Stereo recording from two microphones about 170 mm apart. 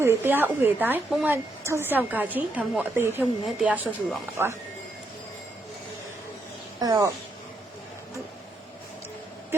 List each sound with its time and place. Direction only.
0.0 s a woman's voice: 15° right (ahead or behind)
3.4 s speech: centre (ahead or behind)
4.4 s a woman's voice: 15° right (ahead or behind)
6.7 s speech: 25° right (ahead or behind)